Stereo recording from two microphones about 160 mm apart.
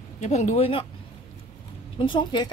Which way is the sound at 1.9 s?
30° left (ahead or behind).